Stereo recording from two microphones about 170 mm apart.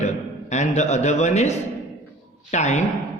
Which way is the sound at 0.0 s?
45° left (ahead or behind).